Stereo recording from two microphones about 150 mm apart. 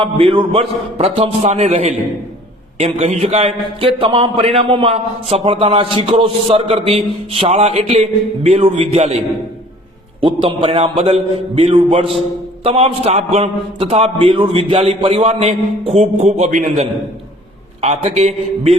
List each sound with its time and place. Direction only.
0.0 s a man's voice: 35° right (ahead or behind)
10.2 s a man's voice: 35° right (ahead or behind)